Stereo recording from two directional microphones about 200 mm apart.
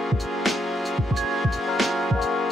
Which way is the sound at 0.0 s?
Centre (ahead or behind).